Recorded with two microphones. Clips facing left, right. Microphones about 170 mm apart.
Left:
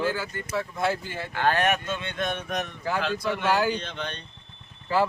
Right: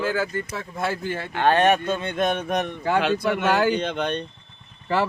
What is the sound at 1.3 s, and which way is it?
Speech, 20° right (ahead or behind).